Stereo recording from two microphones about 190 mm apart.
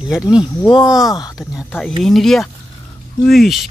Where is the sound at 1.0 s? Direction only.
20° left (ahead or behind).